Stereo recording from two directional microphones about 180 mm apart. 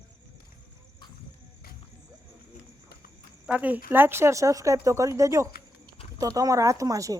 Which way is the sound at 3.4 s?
10° right (ahead or behind).